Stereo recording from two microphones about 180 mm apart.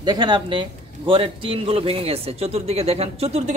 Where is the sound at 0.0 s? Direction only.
25° right (ahead or behind).